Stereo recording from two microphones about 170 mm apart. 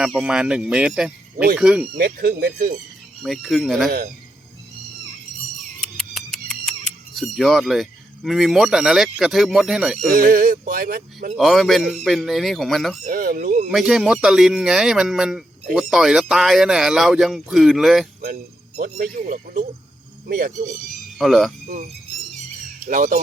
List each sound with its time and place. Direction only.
0.0 s speech: 5° right (ahead or behind)
2.0 s speech: 60° right (ahead or behind)
3.2 s speech: centre (ahead or behind)
5.5 s a sound: centre (ahead or behind)
10.1 s speech: 55° right (ahead or behind)
11.3 s speech: centre (ahead or behind)
13.1 s speech: 55° right (ahead or behind)
13.7 s speech: 5° right (ahead or behind)
18.8 s speech: 55° right (ahead or behind)
21.2 s speech: centre (ahead or behind)
22.9 s speech: 50° right (ahead or behind)